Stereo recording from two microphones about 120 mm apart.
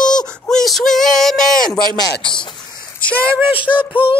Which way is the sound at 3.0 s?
10° left (ahead or behind).